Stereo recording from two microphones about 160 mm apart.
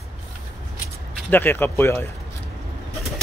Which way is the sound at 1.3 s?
10° left (ahead or behind).